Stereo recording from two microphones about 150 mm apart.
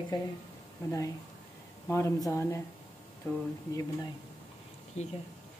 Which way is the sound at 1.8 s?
20° left (ahead or behind).